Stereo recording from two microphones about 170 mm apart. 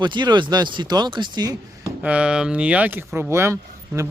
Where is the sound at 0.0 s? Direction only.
25° right (ahead or behind).